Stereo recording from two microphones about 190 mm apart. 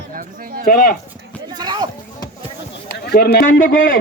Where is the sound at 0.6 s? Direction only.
50° left (ahead or behind).